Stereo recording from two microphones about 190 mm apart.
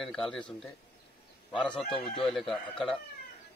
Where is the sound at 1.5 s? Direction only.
5° left (ahead or behind).